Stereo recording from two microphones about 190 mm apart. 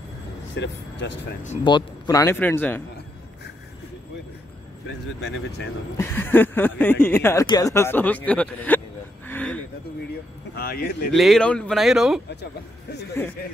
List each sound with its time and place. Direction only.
0.6 s speech: 70° left (ahead or behind)
1.6 s speech: 25° left (ahead or behind)
5.9 s speech: 15° left (ahead or behind)
9.3 s a sound: 5° left (ahead or behind)
10.5 s speech: 55° left (ahead or behind)
11.1 s speech: centre (ahead or behind)
13.2 s speech: 10° left (ahead or behind)